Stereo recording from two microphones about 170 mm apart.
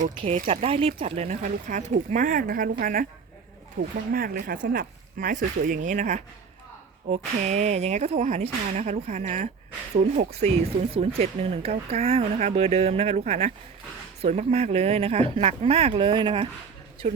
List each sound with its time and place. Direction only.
0.0 s speech: 45° right (ahead or behind)
0.4 s speech: 35° right (ahead or behind); by 3.1 s 55° right (ahead or behind)
4.1 s speech: 60° right (ahead or behind); by 16.5 s 30° right (ahead or behind)